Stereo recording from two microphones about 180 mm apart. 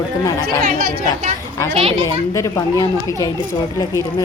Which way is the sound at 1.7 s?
30° right (ahead or behind).